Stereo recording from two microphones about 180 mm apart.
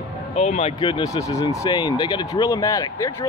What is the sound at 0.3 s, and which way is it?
Speech, 35° left (ahead or behind).